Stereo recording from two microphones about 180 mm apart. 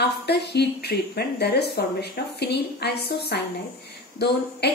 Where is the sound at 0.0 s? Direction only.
65° left (ahead or behind).